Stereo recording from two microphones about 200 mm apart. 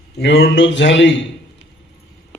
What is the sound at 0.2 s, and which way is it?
A man's voice, 60° left (ahead or behind).